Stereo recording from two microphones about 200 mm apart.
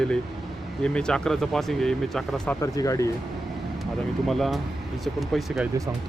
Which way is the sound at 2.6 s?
15° left (ahead or behind).